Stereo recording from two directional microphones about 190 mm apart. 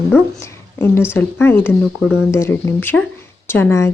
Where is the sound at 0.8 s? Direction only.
10° left (ahead or behind).